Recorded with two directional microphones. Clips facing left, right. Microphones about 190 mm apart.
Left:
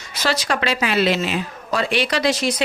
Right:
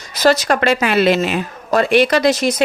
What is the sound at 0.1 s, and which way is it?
Speech, 45° right (ahead or behind).